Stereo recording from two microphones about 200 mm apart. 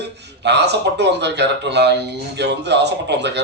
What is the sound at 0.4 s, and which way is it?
Speech, 60° right (ahead or behind).